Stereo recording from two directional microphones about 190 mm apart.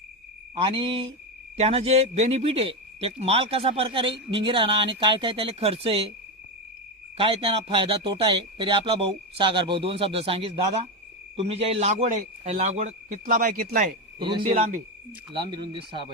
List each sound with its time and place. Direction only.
0.5 s speech: 25° right (ahead or behind)
7.2 s a man's voice: 30° right (ahead or behind)
13.2 s speech: 50° right (ahead or behind)
14.2 s speech: 25° right (ahead or behind)
14.5 s speech: 45° right (ahead or behind)
15.3 s speech: 25° right (ahead or behind)